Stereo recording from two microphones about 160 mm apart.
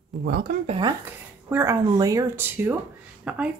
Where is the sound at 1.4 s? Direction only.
15° right (ahead or behind).